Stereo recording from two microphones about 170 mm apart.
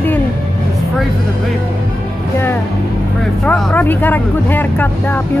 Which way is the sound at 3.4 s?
5° left (ahead or behind).